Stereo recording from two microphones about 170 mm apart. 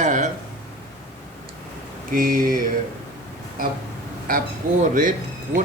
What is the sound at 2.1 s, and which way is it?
Speech, 55° right (ahead or behind).